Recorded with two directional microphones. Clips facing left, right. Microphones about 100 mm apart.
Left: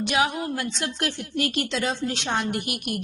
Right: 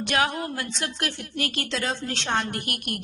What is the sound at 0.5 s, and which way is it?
A woman's voice, 25° left (ahead or behind).